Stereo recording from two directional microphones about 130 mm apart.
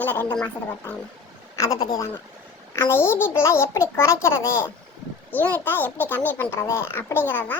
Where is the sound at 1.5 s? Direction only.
25° left (ahead or behind).